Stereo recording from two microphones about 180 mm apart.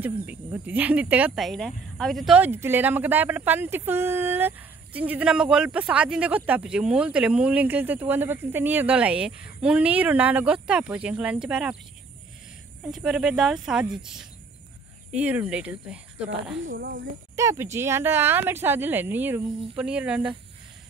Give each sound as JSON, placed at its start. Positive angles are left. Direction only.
{"t": 0.0, "sound": "speech", "side_deg": -10}
{"t": 12.9, "sound": "speech", "side_deg": -5}
{"t": 15.0, "sound": "speech", "side_deg": -5}
{"t": 16.6, "sound": "speech", "side_deg": -70}
{"t": 17.4, "sound": "speech", "side_deg": -15}